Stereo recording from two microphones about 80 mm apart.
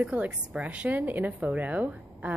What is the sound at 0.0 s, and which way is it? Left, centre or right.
A woman's voice, centre.